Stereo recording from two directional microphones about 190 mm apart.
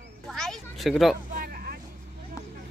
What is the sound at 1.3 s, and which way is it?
Vehicle, 50° right (ahead or behind).